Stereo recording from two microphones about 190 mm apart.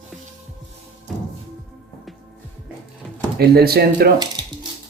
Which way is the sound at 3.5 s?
55° right (ahead or behind).